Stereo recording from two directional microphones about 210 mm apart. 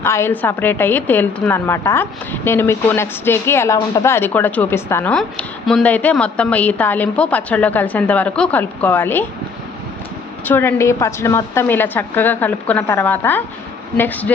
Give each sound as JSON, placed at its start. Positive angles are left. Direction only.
{"t": 0.0, "sound": "a woman's voice", "side_deg": 10}
{"t": 10.4, "sound": "a woman's voice", "side_deg": 10}